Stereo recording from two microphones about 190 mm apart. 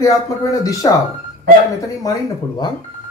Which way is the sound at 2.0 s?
20° left (ahead or behind).